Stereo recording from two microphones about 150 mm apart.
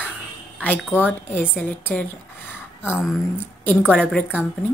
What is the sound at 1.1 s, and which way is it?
Speech, 10° left (ahead or behind).